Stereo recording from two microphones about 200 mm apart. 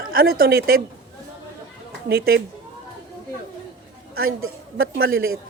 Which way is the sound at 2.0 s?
50° right (ahead or behind).